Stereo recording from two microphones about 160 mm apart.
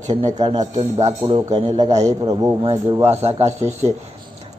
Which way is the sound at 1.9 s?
45° right (ahead or behind).